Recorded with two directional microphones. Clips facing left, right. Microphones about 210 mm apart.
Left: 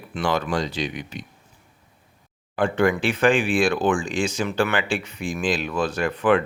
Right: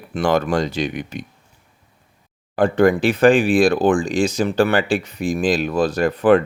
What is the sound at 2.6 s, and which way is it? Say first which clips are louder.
Speech: right 5 dB; 35° right (ahead or behind).